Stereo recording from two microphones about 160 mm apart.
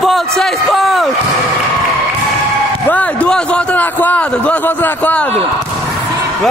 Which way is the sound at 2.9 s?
10° left (ahead or behind).